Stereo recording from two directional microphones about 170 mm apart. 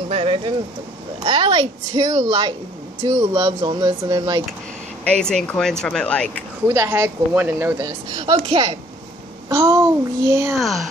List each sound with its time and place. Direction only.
0.1 s speech: 35° right (ahead or behind)
5.1 s speech: 5° left (ahead or behind)
6.7 s speech: 15° right (ahead or behind); by 8.7 s 30° right (ahead or behind)
9.5 s speech: 15° right (ahead or behind)
10.5 s speech: centre (ahead or behind)